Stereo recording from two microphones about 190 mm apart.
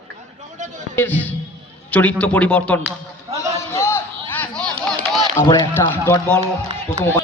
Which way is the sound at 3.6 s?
15° left (ahead or behind).